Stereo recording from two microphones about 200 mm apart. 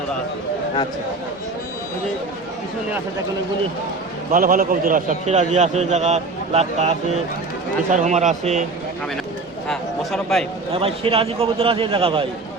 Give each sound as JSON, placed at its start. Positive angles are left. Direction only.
{"t": 4.3, "sound": "a man's voice", "side_deg": -45}
{"t": 9.6, "sound": "a man's voice", "side_deg": 0}
{"t": 10.8, "sound": "a man's voice", "side_deg": -25}